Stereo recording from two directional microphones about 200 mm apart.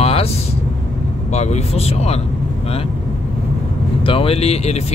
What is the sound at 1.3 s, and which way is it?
Speech, 35° left (ahead or behind).